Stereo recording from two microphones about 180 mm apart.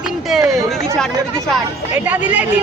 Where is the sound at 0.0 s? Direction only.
Centre (ahead or behind).